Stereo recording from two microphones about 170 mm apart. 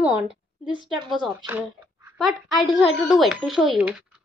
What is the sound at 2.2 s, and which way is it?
A woman's voice, centre (ahead or behind).